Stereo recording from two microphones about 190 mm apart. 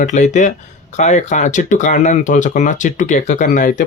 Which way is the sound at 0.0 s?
40° left (ahead or behind).